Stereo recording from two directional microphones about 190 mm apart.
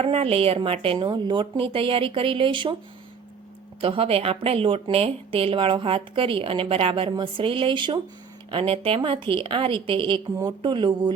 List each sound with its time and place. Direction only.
0.0 s a woman's voice: 30° right (ahead or behind)
3.8 s a woman's voice: 30° right (ahead or behind)